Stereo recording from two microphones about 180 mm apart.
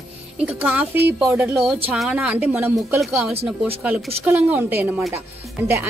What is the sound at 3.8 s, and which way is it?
Speech, 10° right (ahead or behind).